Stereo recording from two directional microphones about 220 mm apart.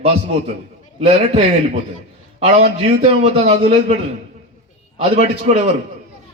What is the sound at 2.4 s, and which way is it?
A man's voice, 30° right (ahead or behind).